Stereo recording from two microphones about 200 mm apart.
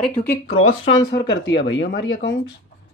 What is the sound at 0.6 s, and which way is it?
Speech, 90° left.